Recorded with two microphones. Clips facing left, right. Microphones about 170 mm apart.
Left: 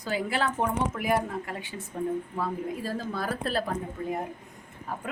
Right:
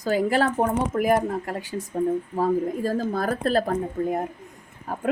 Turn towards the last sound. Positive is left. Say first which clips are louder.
# right 4 dB
turn(degrees=-45)  # may be behind; listen again after turning